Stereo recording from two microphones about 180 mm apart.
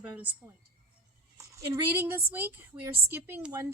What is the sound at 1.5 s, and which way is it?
A woman's voice, 15° right (ahead or behind).